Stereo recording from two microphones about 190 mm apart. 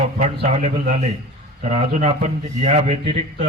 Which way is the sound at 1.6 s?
35° right (ahead or behind).